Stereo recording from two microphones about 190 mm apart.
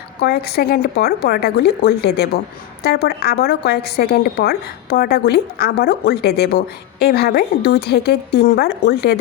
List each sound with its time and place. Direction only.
0.2 s a woman's voice: 60° left (ahead or behind)